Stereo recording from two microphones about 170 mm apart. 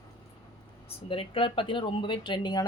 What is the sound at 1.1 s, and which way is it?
Speech, 35° left (ahead or behind).